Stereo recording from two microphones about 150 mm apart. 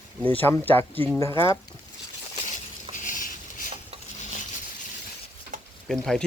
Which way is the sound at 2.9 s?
60° left (ahead or behind).